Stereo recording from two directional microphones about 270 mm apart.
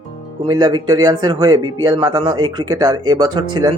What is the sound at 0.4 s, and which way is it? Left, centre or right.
Speech, centre.